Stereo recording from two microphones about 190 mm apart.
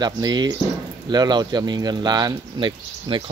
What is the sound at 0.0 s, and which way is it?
Speech, 20° right (ahead or behind).